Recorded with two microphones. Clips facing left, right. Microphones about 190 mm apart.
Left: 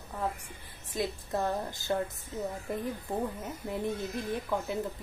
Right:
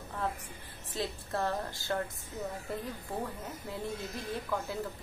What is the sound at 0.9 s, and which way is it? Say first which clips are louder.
Speech: left 3 dB; 15° left (ahead or behind).